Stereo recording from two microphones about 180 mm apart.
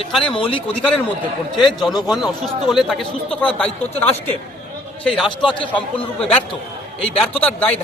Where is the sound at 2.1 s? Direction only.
Centre (ahead or behind).